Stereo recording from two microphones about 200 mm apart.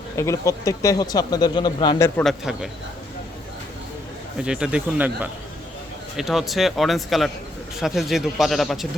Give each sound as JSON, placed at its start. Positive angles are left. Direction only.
{"t": 0.2, "sound": "speech", "side_deg": 15}
{"t": 2.0, "sound": "a man's voice", "side_deg": 10}
{"t": 2.4, "sound": "speech", "side_deg": -5}
{"t": 4.4, "sound": "speech", "side_deg": -5}